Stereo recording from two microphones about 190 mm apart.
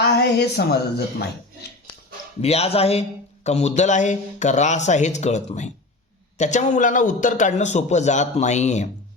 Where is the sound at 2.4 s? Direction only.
35° left (ahead or behind).